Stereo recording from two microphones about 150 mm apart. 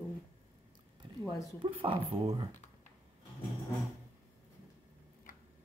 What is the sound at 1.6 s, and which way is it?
Speech, 35° right (ahead or behind).